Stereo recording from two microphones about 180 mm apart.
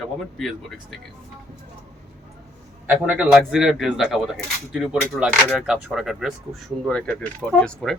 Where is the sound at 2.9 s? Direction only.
5° right (ahead or behind).